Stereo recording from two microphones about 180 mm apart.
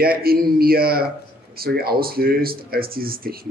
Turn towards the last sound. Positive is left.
turn(degrees=-55)  # may be behind; listen again after turning